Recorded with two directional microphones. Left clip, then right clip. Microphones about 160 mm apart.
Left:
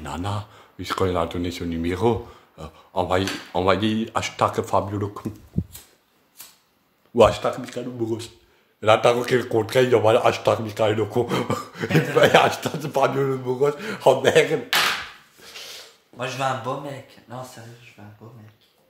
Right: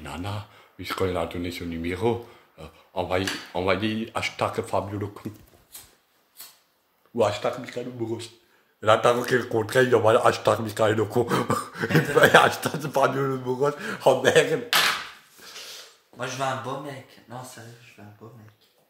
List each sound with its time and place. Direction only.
0.0 s speech: 15° left (ahead or behind)
7.3 s speech: centre (ahead or behind)
9.7 s speech: centre (ahead or behind)
16.2 s speech: centre (ahead or behind)